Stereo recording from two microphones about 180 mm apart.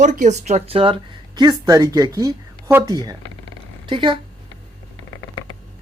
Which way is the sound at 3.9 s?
30° right (ahead or behind).